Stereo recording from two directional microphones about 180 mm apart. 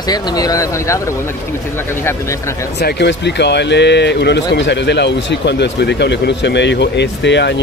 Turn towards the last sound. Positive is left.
turn(degrees=75)  # may be behind; listen again after turning